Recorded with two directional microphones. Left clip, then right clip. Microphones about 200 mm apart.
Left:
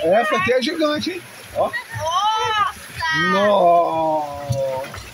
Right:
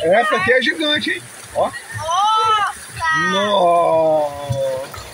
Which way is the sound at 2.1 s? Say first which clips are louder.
Right 4 dB; 15° left (ahead or behind).